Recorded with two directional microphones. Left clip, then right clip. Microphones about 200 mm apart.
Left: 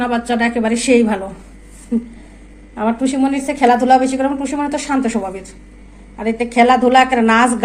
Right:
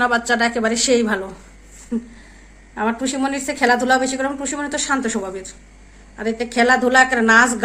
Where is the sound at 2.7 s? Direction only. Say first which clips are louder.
Left 3 dB; 20° right (ahead or behind).